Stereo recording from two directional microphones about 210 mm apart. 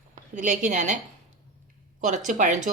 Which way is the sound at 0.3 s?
35° right (ahead or behind).